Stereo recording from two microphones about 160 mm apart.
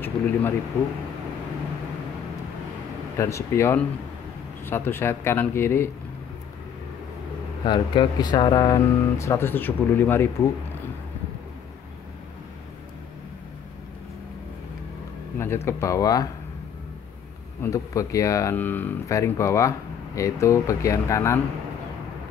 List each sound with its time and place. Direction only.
0.0 s speech: 15° left (ahead or behind)
3.2 s speech: 15° left (ahead or behind)
7.6 s speech: 30° left (ahead or behind); by 10.3 s 15° left (ahead or behind)
15.3 s speech: 15° left (ahead or behind)
17.6 s speech: 20° left (ahead or behind)